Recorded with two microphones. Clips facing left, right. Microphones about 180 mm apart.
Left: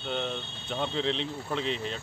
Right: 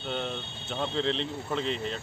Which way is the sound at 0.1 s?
Centre (ahead or behind).